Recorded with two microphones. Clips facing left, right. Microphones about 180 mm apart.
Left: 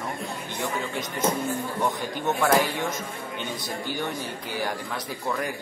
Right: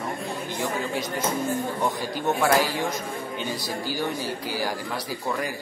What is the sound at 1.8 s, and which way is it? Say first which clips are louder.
Speech: right 1 dB; 10° right (ahead or behind).